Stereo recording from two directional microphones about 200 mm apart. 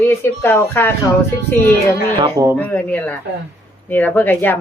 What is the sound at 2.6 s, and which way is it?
Speech, 10° left (ahead or behind).